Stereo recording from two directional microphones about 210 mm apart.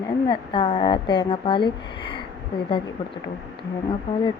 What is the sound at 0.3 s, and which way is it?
Speech, 25° left (ahead or behind).